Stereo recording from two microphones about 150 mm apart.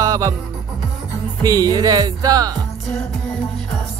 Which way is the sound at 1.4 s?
25° right (ahead or behind).